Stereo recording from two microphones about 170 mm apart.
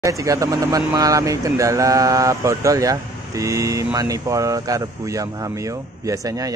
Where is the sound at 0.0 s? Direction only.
20° right (ahead or behind).